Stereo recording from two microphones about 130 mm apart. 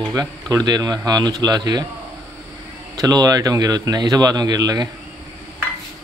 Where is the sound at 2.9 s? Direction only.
30° right (ahead or behind).